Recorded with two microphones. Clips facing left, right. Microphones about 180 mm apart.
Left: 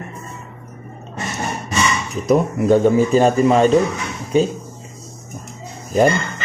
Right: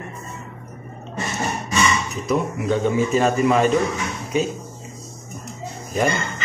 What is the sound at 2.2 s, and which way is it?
A man's voice, 40° left (ahead or behind).